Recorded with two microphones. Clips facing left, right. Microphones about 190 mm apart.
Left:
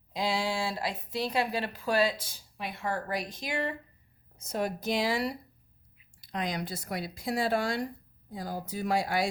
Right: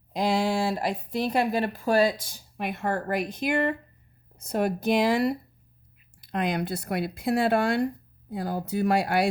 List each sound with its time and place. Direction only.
0.1 s speech: 50° right (ahead or behind)